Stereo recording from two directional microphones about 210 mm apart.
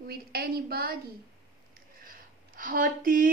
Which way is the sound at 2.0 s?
40° right (ahead or behind).